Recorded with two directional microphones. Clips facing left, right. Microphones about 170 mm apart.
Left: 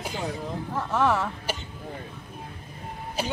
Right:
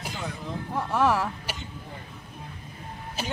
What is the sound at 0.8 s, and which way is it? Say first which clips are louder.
Speech: even; 10° right (ahead or behind).